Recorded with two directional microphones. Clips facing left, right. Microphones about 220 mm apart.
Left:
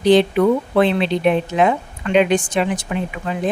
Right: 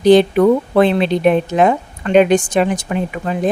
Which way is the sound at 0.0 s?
45° right (ahead or behind).